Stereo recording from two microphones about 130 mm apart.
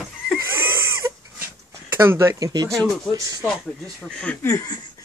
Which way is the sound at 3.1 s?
25° right (ahead or behind).